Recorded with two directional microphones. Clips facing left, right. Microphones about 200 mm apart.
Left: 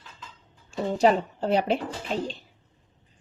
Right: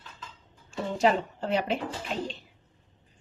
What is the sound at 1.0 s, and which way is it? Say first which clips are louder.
Speech: left 3 dB; 40° left (ahead or behind).